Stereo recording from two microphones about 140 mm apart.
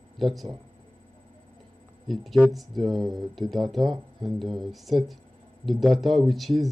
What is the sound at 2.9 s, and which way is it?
Speech, 30° right (ahead or behind).